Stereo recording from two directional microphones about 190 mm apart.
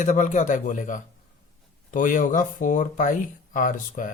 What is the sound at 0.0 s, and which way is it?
Speech, 40° left (ahead or behind).